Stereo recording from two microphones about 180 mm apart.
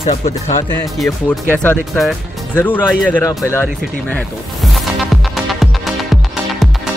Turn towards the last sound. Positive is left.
turn(degrees=0)  # may be behind; listen again after turning